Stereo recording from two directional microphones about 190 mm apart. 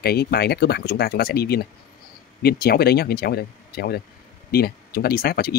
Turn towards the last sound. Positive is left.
turn(degrees=55)  # may be behind; listen again after turning